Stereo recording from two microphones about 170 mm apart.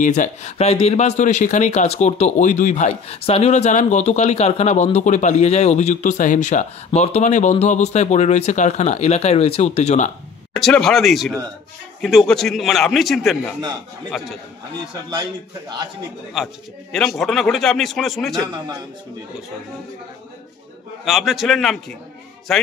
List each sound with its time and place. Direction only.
0.0 s speech: 45° left (ahead or behind)
10.5 s a man's voice: 5° left (ahead or behind)
16.4 s a man's voice: centre (ahead or behind)
21.0 s a man's voice: centre (ahead or behind)